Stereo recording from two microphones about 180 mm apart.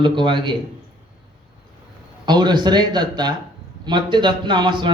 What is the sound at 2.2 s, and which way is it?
A man's voice, 25° right (ahead or behind).